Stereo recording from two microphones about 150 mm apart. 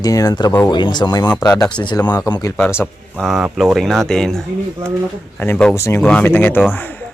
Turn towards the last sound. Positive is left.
turn(degrees=10)  # may be behind; listen again after turning